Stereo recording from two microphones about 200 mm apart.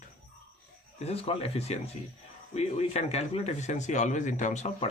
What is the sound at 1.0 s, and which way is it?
Speech, 30° left (ahead or behind).